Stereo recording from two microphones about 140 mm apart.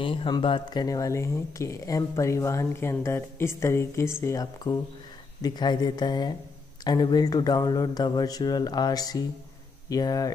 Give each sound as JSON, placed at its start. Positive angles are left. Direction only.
{"t": 0.0, "sound": "speech", "side_deg": 35}